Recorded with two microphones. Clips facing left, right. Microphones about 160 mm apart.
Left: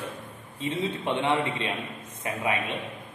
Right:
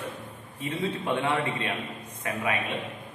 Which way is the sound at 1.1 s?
20° left (ahead or behind).